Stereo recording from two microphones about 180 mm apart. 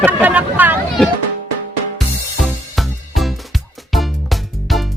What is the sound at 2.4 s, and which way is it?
Music, centre (ahead or behind).